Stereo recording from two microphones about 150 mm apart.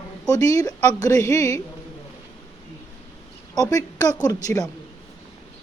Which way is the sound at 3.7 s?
25° left (ahead or behind).